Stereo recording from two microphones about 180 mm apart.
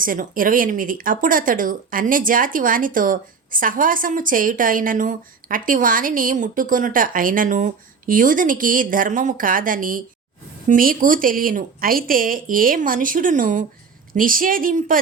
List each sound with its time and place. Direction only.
0.0 s speech: 50° right (ahead or behind)